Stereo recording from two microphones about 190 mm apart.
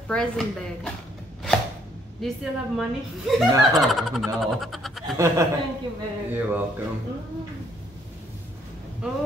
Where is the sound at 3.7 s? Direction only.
Centre (ahead or behind).